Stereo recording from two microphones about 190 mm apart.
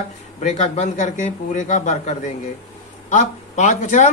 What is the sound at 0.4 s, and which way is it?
Speech, 40° left (ahead or behind).